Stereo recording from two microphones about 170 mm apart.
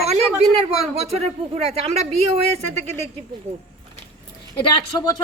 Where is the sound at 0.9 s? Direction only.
40° right (ahead or behind).